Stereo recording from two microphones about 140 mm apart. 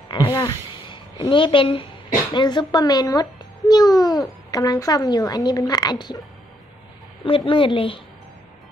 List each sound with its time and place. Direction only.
0.1 s a child's voice: 35° left (ahead or behind)
7.2 s a woman's voice: 40° left (ahead or behind)